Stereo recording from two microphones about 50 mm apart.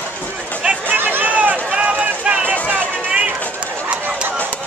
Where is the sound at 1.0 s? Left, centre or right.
Right.